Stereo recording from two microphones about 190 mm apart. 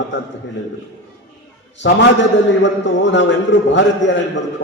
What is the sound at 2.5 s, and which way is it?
A man's voice, 70° left (ahead or behind).